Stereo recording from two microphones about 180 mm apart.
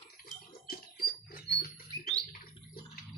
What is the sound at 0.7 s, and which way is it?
Bird, 55° left (ahead or behind).